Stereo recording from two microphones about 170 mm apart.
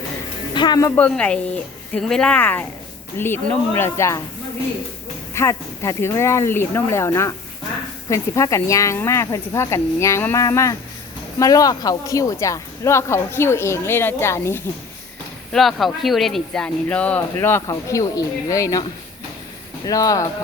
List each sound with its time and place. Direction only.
0.5 s speech: 25° left (ahead or behind)
5.3 s speech: 15° left (ahead or behind)
15.5 s speech: centre (ahead or behind); by 20.2 s 20° left (ahead or behind)